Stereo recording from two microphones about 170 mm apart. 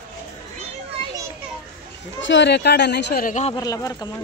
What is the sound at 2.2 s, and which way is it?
Speech, 90° left.